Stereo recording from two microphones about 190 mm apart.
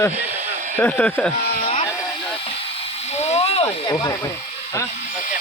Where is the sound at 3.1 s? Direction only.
35° left (ahead or behind).